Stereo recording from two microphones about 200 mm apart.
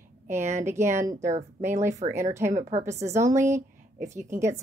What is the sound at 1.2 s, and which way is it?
Speech, 35° right (ahead or behind).